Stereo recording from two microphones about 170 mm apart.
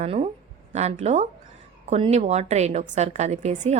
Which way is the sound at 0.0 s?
35° right (ahead or behind).